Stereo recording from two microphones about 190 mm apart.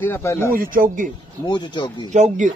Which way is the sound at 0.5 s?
50° right (ahead or behind).